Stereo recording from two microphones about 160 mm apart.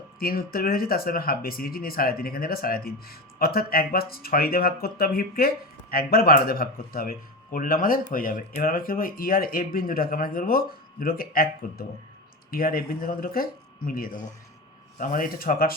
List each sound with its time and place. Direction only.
0.2 s speech: 65° left (ahead or behind)